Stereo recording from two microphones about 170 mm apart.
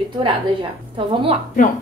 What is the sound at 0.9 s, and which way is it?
Speech, 30° right (ahead or behind).